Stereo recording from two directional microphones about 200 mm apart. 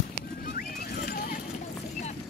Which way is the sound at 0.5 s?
50° left (ahead or behind).